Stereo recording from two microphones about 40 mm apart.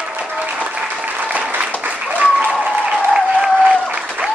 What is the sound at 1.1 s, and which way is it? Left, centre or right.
Applause, right.